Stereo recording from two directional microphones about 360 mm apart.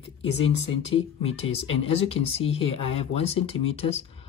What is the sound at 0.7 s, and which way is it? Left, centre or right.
Speech, centre.